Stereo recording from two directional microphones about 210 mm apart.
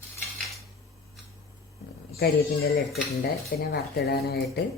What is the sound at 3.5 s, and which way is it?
Speech, 45° left (ahead or behind).